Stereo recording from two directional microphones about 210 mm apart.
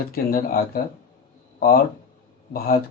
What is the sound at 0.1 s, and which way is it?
Speech, 45° left (ahead or behind).